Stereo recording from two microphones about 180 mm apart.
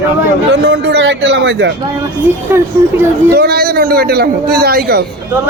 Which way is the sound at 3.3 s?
60° right (ahead or behind).